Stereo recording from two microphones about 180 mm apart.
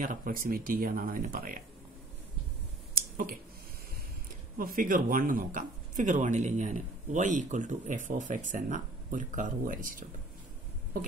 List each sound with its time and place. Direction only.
0.0 s speech: 50° right (ahead or behind)
2.9 s finger snapping: 50° right (ahead or behind)
4.6 s speech: 50° right (ahead or behind)